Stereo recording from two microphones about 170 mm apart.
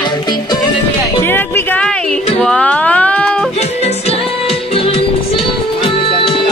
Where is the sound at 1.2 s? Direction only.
15° left (ahead or behind).